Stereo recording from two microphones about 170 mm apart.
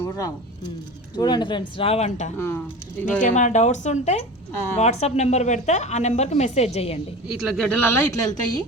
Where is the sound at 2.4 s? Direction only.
15° left (ahead or behind).